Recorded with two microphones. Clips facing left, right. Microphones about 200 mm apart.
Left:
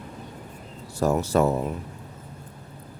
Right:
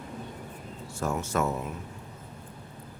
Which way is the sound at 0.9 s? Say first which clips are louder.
Left 8 dB; 35° left (ahead or behind).